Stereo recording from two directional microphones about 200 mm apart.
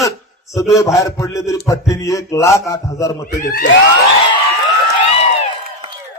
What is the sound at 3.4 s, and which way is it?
Speech, 45° left (ahead or behind).